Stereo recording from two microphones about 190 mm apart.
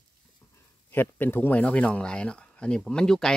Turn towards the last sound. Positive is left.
turn(degrees=5)  # may be behind; listen again after turning